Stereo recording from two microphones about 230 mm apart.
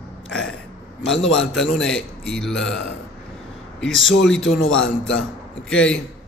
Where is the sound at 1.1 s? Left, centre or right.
Left.